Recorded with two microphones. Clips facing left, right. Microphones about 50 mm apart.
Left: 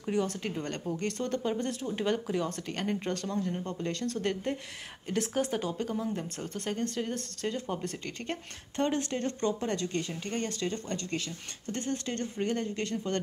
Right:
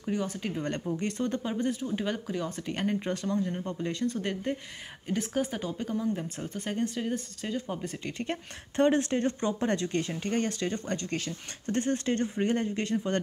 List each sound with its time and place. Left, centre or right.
0.0 s speech: centre
8.7 s speech: right